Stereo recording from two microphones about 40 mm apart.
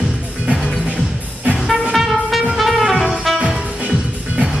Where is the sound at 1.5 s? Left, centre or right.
Centre.